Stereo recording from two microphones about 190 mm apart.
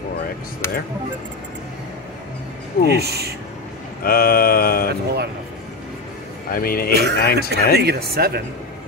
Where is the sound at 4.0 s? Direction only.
50° left (ahead or behind).